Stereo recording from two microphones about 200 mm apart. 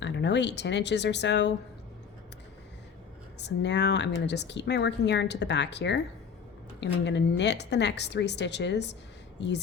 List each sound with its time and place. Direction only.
0.0 s speech: 60° left (ahead or behind)
3.3 s speech: 60° left (ahead or behind)